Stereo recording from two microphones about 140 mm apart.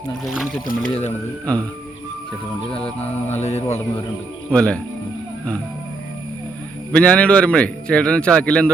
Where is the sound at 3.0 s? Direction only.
50° left (ahead or behind).